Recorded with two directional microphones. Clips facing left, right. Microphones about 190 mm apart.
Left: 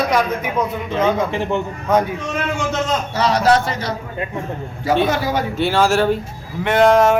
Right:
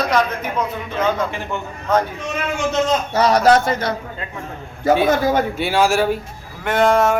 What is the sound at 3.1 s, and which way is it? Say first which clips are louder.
Speech: right 2 dB; 45° right (ahead or behind).